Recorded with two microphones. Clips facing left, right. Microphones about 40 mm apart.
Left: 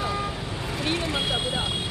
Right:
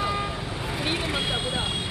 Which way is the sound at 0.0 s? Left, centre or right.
Centre.